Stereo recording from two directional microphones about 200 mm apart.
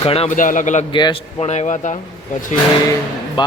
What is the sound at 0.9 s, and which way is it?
Speech, 20° left (ahead or behind).